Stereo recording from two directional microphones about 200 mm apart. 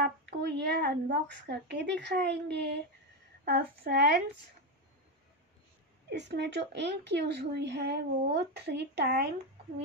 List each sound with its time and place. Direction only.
0.0 s a woman's voice: 55° right (ahead or behind)
6.0 s a woman's voice: 60° right (ahead or behind)